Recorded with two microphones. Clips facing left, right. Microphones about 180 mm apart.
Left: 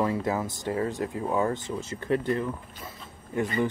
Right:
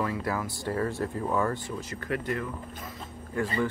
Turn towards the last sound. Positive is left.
turn(degrees=20)  # may be behind; listen again after turning